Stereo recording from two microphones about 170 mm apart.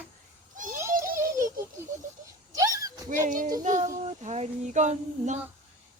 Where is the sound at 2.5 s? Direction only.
20° right (ahead or behind).